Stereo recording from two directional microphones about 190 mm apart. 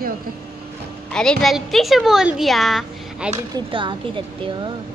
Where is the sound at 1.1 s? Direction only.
5° left (ahead or behind).